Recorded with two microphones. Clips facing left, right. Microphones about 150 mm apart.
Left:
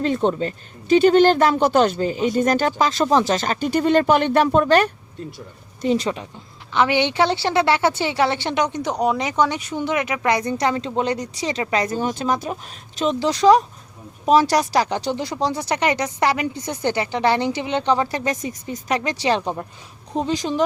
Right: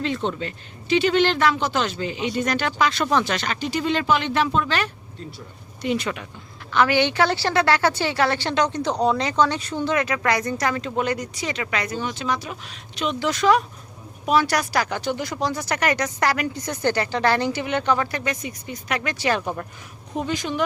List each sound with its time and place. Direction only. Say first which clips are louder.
0.0 s speech: left 5 dB; 45° left (ahead or behind)
5.8 s a woman's voice: left 4 dB; 35° left (ahead or behind)
18.9 s a woman's voice: left 2 dB; 30° left (ahead or behind)